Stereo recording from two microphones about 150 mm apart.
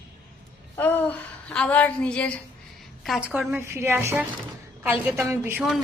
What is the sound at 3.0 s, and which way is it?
A woman's voice, 5° right (ahead or behind).